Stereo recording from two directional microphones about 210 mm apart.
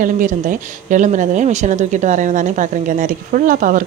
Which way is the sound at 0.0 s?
40° right (ahead or behind).